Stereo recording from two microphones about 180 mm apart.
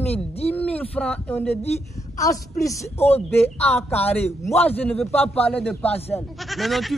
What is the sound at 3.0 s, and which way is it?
Speech, 35° left (ahead or behind).